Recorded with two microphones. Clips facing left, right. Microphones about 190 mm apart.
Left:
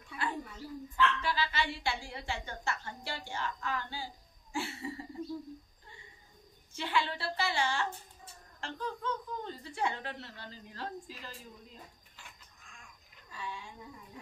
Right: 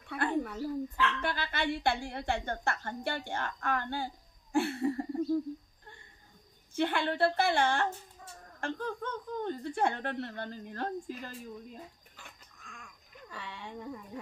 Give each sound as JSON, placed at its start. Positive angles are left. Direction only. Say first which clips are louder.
{"t": 0.0, "sound": "a sound", "louder": "right 7 dB", "side_deg": -65}
{"t": 1.2, "sound": "a woman's voice", "louder": "right 1 dB", "side_deg": -55}
{"t": 6.7, "sound": "a woman's voice", "louder": "right 4 dB", "side_deg": -55}
{"t": 12.2, "sound": "cat", "louder": "right 2 dB", "side_deg": -60}
{"t": 13.3, "sound": "a woman's voice", "louder": "even", "side_deg": -65}